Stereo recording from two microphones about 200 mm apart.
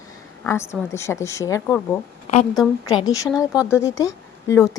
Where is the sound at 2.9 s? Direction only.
15° left (ahead or behind).